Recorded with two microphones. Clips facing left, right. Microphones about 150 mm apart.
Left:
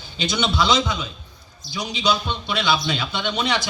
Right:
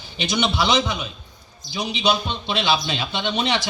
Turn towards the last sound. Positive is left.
turn(degrees=-25)  # may be behind; listen again after turning